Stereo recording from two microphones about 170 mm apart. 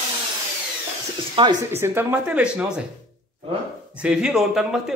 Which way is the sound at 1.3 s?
25° right (ahead or behind).